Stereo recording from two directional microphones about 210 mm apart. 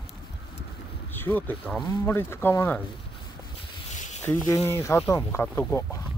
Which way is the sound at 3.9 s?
35° left (ahead or behind).